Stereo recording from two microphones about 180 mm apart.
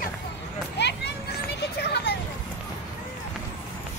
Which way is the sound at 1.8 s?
65° left (ahead or behind).